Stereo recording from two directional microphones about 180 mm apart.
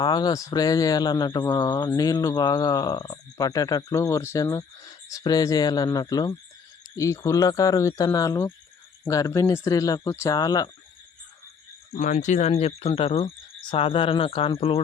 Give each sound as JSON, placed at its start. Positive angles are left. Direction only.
{"t": 0.0, "sound": "speech", "side_deg": 25}
{"t": 11.9, "sound": "speech", "side_deg": 45}